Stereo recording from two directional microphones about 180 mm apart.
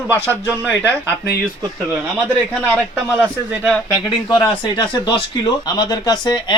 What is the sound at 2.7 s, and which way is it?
Speech, 5° right (ahead or behind).